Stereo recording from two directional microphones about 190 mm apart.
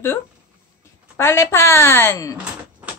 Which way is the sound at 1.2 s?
15° left (ahead or behind).